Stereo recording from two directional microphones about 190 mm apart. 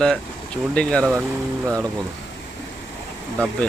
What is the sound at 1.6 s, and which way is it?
Speech, 15° right (ahead or behind).